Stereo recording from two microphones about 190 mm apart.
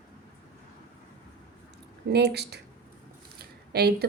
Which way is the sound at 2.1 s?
60° right (ahead or behind).